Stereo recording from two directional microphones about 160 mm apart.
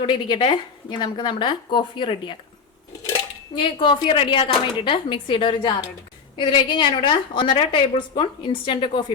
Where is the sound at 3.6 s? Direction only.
30° left (ahead or behind).